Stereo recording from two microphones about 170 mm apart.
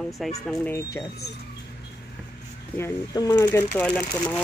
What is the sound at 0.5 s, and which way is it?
Speech, 15° left (ahead or behind).